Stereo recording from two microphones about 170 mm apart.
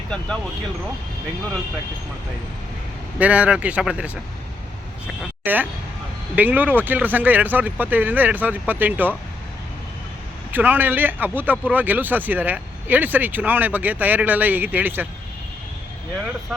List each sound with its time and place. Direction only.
3.2 s speech: 5° right (ahead or behind)
5.5 s speech: 10° right (ahead or behind)
10.5 s speech: 10° right (ahead or behind)